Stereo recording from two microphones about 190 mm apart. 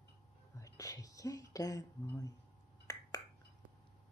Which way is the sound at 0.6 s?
20° left (ahead or behind).